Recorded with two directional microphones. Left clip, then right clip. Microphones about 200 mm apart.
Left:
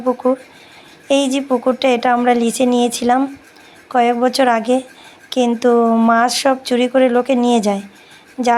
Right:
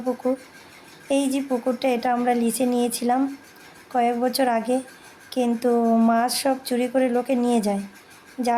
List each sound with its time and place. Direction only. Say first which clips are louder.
0.0 s speech: left 8 dB; 25° left (ahead or behind)